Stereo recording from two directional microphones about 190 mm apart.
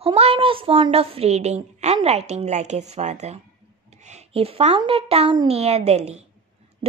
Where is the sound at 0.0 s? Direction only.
30° right (ahead or behind).